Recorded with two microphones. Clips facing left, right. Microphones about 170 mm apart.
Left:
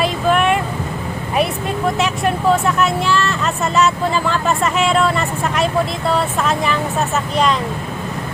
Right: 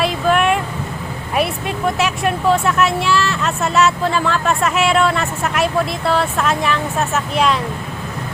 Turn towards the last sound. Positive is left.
turn(degrees=0)  # may be behind; listen again after turning